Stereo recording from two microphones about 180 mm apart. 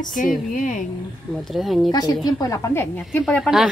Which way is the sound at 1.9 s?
20° left (ahead or behind).